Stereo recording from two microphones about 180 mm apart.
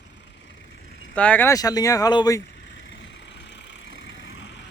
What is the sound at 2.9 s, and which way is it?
Vehicle, 85° left.